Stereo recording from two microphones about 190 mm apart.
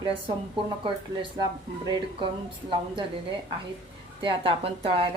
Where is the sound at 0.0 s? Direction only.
25° right (ahead or behind).